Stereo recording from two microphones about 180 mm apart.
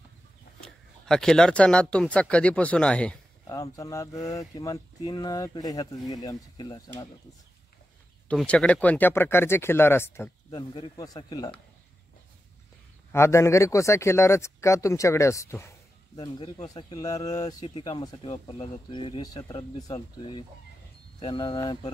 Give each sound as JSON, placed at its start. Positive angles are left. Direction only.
{"t": 0.6, "sound": "speech", "side_deg": 5}
{"t": 3.4, "sound": "speech", "side_deg": 20}
{"t": 8.3, "sound": "speech", "side_deg": 5}
{"t": 10.5, "sound": "speech", "side_deg": 25}
{"t": 13.1, "sound": "speech", "side_deg": 15}